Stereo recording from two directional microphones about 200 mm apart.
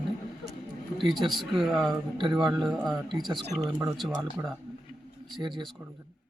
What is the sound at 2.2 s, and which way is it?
A man's voice, 20° right (ahead or behind).